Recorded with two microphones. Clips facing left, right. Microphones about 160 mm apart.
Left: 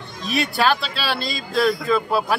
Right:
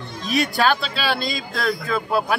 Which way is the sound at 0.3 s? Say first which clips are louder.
Right 1 dB; centre (ahead or behind).